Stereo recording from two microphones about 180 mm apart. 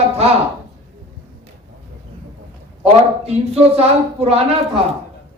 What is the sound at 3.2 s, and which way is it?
Speech, 35° right (ahead or behind).